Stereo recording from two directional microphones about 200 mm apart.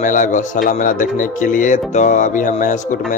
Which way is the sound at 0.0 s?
40° left (ahead or behind).